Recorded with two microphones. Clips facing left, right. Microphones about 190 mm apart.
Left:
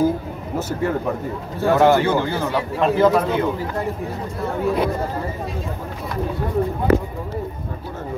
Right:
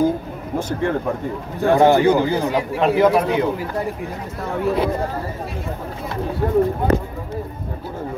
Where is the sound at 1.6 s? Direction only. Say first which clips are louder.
Right 2 dB; 15° right (ahead or behind).